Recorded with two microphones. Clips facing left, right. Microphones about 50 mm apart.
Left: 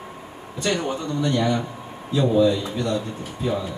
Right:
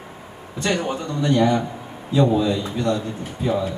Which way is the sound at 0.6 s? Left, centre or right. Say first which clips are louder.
Right 1 dB; centre.